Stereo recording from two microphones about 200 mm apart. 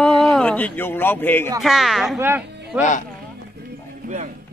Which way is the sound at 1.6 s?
Centre (ahead or behind).